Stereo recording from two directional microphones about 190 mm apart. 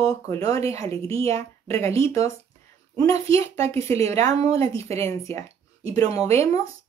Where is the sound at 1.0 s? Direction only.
30° right (ahead or behind).